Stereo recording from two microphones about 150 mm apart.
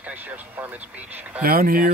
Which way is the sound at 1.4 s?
75° right (ahead or behind).